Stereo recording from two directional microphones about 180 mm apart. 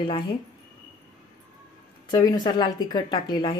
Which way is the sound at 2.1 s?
20° left (ahead or behind).